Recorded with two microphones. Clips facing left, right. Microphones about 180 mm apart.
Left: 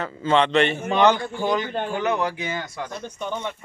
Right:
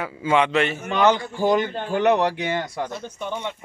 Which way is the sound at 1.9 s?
70° right (ahead or behind).